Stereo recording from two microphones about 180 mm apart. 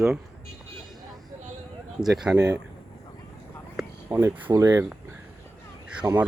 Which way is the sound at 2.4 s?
20° right (ahead or behind).